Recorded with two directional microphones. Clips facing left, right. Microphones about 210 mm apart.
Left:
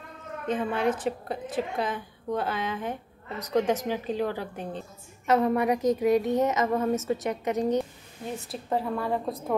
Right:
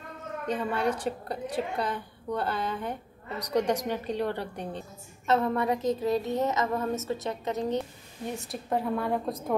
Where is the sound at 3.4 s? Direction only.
15° right (ahead or behind).